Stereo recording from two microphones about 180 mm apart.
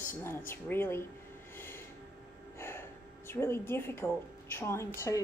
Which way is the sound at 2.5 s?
15° left (ahead or behind).